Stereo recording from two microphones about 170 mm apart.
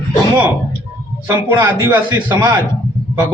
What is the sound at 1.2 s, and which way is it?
A man's voice, 15° right (ahead or behind).